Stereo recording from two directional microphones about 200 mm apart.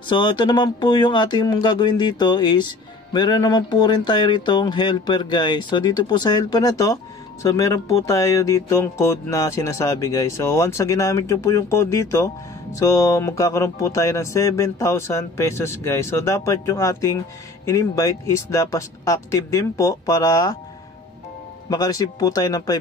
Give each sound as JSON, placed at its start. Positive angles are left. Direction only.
{"t": 0.1, "sound": "speech", "side_deg": 25}
{"t": 21.6, "sound": "speech", "side_deg": 20}